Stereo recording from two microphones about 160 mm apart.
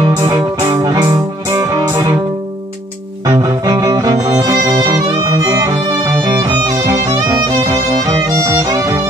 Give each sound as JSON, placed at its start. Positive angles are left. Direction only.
{"t": 0.0, "sound": "music", "side_deg": -20}
{"t": 3.3, "sound": "music", "side_deg": -20}